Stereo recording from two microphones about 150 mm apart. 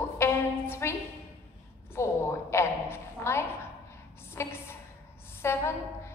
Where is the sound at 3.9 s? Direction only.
15° left (ahead or behind).